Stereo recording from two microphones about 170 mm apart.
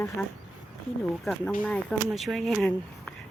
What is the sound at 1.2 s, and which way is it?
Speech, 5° left (ahead or behind).